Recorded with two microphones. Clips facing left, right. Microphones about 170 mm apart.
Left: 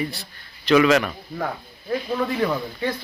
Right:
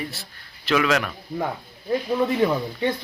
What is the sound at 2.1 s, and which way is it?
Speech, 15° right (ahead or behind).